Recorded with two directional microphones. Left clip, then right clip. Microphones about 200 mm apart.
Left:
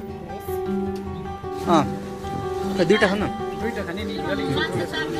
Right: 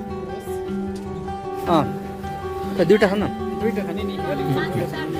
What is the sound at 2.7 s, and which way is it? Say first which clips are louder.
Speech: right 2 dB; 20° right (ahead or behind).